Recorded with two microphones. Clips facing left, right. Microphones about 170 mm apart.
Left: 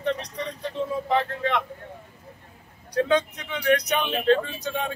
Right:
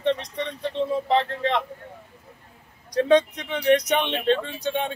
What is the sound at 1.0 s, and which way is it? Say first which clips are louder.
Speech: right 2 dB; 30° right (ahead or behind).